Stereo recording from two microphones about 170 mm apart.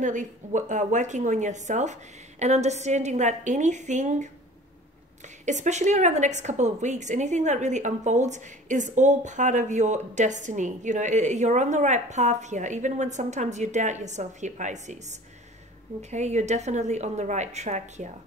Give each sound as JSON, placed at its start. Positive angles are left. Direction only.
{"t": 0.0, "sound": "a woman's voice", "side_deg": -45}
{"t": 5.4, "sound": "a woman's voice", "side_deg": -45}